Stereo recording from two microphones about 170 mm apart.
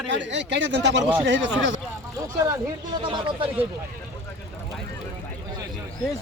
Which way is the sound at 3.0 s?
30° right (ahead or behind).